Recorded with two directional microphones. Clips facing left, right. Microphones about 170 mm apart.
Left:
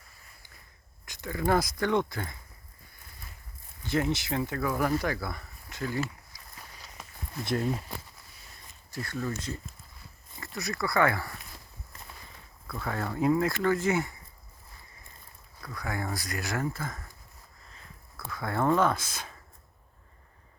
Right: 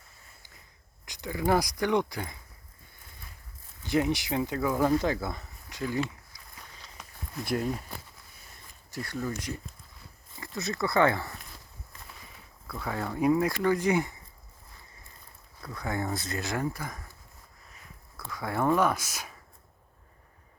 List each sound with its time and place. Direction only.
1.0 s speech: 15° right (ahead or behind)
3.8 s speech: 15° right (ahead or behind)
7.4 s speech: 10° right (ahead or behind)
8.9 s speech: 15° right (ahead or behind)
12.6 s speech: 10° right (ahead or behind)
15.6 s speech: 25° right (ahead or behind)
18.3 s speech: 10° right (ahead or behind)